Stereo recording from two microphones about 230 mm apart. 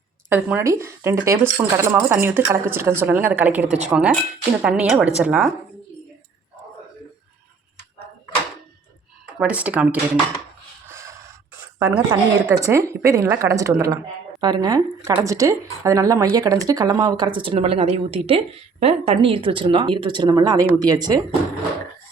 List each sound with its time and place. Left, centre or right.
0.3 s a woman's voice: centre
9.4 s a woman's voice: centre
10.8 s a sound: centre
11.8 s speech: centre